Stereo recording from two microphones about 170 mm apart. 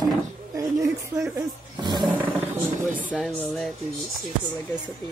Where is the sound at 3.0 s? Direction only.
5° right (ahead or behind).